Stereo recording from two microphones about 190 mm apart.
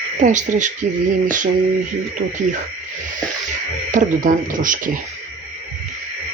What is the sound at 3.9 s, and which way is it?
Speech, 40° right (ahead or behind).